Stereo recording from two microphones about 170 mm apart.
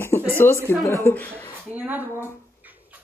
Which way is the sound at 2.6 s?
10° right (ahead or behind).